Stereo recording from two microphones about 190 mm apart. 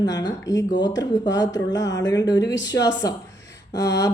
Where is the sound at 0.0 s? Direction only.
20° left (ahead or behind).